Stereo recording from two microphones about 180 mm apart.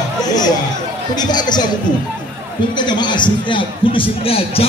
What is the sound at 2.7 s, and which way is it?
A man's voice, 25° left (ahead or behind).